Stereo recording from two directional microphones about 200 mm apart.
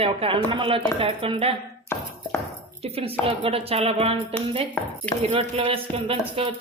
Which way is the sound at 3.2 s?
30° right (ahead or behind).